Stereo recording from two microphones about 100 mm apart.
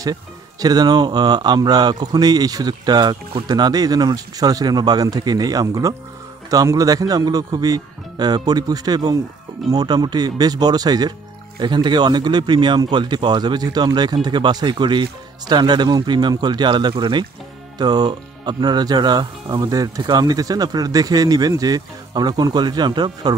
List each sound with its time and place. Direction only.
0.0 s speech: 40° right (ahead or behind)
17.7 s speech: 45° right (ahead or behind)